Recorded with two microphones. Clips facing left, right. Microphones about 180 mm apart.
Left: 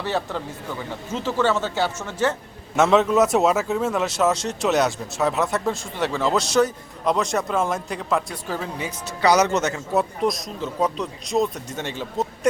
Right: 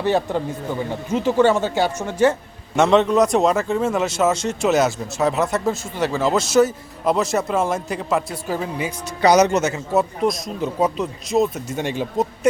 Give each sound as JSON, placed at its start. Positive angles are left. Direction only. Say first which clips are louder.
{"t": 0.0, "sound": "speech", "louder": "right 6 dB", "side_deg": -15}
{"t": 2.7, "sound": "speech", "louder": "right 2 dB", "side_deg": 5}
{"t": 9.2, "sound": "speech", "louder": "right 3 dB", "side_deg": -20}